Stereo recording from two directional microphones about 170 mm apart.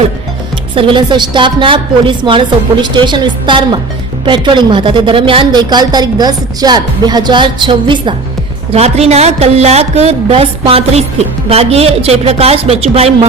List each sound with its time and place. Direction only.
0.8 s a woman's voice: 30° right (ahead or behind)